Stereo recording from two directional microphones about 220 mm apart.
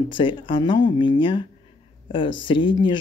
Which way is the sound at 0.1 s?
20° left (ahead or behind).